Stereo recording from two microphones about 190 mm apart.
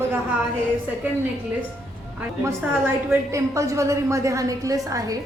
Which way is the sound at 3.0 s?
15° right (ahead or behind).